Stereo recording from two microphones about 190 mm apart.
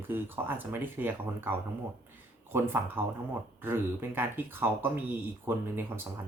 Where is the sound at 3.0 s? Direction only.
10° right (ahead or behind).